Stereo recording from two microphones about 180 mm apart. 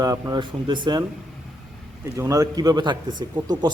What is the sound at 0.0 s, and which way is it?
A man's voice, 20° right (ahead or behind).